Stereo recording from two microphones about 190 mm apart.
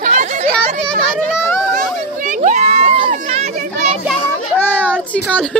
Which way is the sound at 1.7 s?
45° right (ahead or behind).